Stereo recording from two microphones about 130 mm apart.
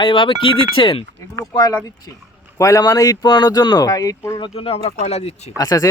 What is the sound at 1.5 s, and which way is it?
Speech, 30° left (ahead or behind).